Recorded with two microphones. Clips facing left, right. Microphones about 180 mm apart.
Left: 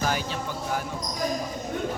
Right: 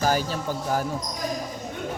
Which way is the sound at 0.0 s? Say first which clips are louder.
Right 4 dB; 40° right (ahead or behind).